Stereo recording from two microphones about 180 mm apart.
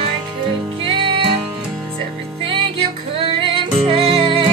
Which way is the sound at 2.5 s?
30° right (ahead or behind).